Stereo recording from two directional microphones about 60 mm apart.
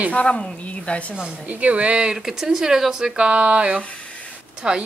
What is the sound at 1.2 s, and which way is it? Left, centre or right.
Speech, right.